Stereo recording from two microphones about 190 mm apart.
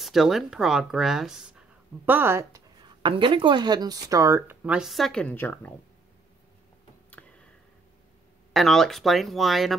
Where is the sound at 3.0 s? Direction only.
25° right (ahead or behind); by 5.7 s 10° left (ahead or behind).